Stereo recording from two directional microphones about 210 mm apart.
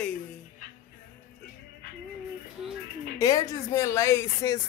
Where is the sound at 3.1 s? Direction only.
15° left (ahead or behind).